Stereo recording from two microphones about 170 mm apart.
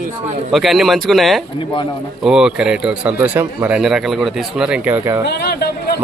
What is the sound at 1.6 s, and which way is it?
Speech, 30° left (ahead or behind).